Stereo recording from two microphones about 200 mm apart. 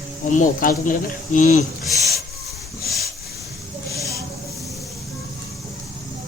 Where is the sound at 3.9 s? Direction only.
15° right (ahead or behind).